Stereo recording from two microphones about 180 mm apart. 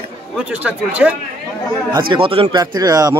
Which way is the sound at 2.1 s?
30° right (ahead or behind).